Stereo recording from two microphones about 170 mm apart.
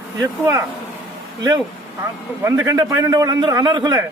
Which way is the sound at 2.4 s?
20° right (ahead or behind).